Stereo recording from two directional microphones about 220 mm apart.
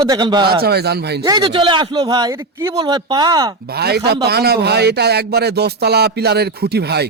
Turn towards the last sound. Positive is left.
turn(degrees=-50)  # may be behind; listen again after turning